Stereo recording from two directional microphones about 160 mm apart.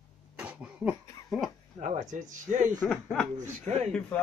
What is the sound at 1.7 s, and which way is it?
Speech, 50° right (ahead or behind).